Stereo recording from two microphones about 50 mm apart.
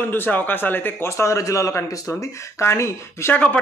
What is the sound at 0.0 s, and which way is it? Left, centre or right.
Speech, left.